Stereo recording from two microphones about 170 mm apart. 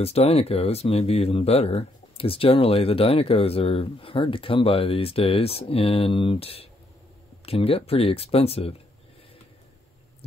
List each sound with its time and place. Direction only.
0.0 s speech: 35° left (ahead or behind)